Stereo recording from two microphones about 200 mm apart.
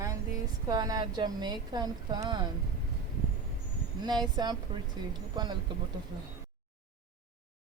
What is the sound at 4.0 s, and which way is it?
Speech, 20° right (ahead or behind).